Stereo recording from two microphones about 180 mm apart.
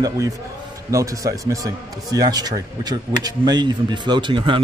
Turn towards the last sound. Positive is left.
turn(degrees=-30)  # may be behind; listen again after turning